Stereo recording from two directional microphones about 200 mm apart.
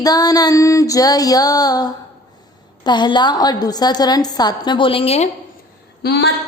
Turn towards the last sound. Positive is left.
turn(degrees=55)  # may be behind; listen again after turning